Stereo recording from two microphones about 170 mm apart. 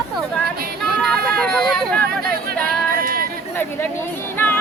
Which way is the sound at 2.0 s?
60° right (ahead or behind).